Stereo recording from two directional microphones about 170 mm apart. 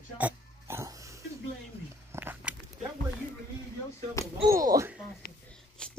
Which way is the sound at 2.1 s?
10° right (ahead or behind).